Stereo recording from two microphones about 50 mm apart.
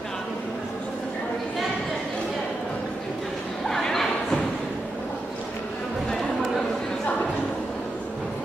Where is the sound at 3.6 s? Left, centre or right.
Centre.